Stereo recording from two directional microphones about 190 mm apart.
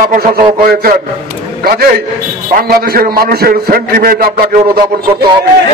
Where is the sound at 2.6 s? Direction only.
55° right (ahead or behind).